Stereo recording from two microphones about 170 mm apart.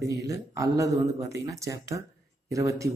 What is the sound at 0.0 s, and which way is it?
Speech, 20° right (ahead or behind).